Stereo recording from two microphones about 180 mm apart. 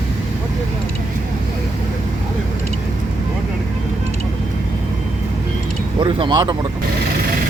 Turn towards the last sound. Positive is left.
turn(degrees=-25)  # may be behind; listen again after turning